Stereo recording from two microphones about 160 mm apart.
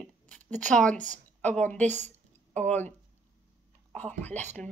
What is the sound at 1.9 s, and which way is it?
Speech, 45° right (ahead or behind).